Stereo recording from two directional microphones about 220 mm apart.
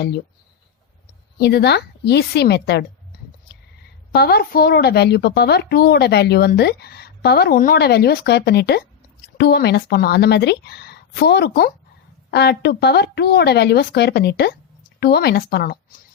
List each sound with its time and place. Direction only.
1.4 s a woman's voice: 50° left (ahead or behind)
4.1 s a woman's voice: 45° left (ahead or behind)